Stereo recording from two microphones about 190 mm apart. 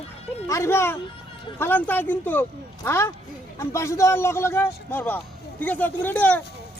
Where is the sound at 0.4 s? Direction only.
15° left (ahead or behind).